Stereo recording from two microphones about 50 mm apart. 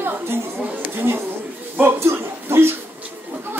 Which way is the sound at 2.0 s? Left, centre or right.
Right.